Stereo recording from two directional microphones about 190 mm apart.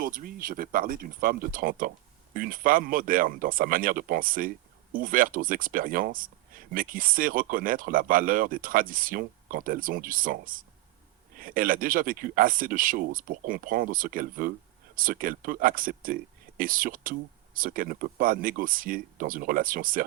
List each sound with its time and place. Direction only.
0.0 s speech: 50° right (ahead or behind)